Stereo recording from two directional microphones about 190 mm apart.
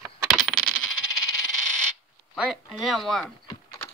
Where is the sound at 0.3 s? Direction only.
Centre (ahead or behind).